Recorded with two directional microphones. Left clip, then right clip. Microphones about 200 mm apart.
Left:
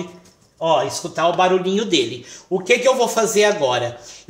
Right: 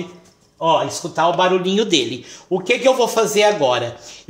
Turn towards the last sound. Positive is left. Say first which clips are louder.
# right 2 dB
turn(degrees=-30)  # may be behind; listen again after turning